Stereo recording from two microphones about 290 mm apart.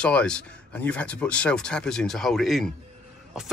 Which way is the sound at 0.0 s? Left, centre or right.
Centre.